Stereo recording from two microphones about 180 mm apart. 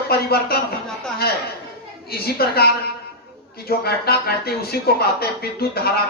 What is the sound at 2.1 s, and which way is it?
A man's voice, 60° left (ahead or behind).